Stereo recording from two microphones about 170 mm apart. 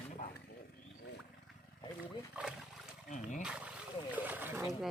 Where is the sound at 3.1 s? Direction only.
50° left (ahead or behind).